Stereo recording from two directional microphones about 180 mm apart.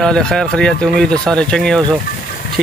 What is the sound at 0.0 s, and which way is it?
Speech, 5° left (ahead or behind).